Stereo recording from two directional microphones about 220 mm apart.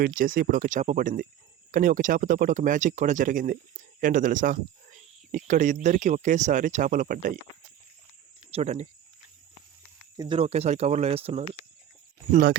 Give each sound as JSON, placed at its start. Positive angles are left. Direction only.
{"t": 0.0, "sound": "speech", "side_deg": -40}
{"t": 8.4, "sound": "speech", "side_deg": -30}
{"t": 10.2, "sound": "speech", "side_deg": -25}
{"t": 12.3, "sound": "speech", "side_deg": -40}